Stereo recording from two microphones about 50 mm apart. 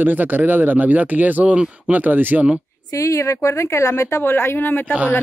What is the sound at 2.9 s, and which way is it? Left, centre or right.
Speech, left.